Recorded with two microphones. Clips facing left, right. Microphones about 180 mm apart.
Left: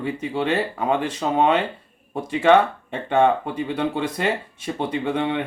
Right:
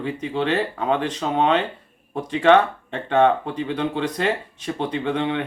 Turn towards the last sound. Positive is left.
turn(degrees=5)  # may be behind; listen again after turning